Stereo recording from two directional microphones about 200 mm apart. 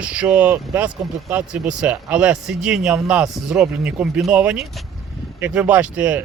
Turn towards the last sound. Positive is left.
turn(degrees=-5)  # may be behind; listen again after turning